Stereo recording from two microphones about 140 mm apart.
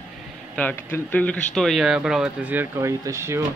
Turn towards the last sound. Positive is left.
turn(degrees=-20)  # may be behind; listen again after turning